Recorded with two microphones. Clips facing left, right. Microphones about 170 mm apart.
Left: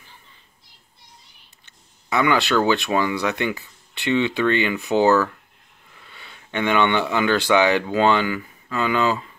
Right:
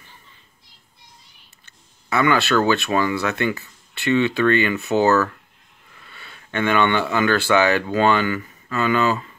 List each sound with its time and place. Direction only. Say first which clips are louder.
1.7 s speech: even; 15° left (ahead or behind)